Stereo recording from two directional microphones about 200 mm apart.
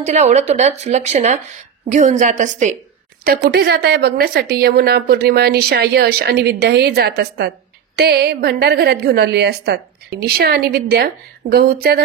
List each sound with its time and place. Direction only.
0.0 s speech: 35° right (ahead or behind)
3.4 s a woman's voice: 55° right (ahead or behind)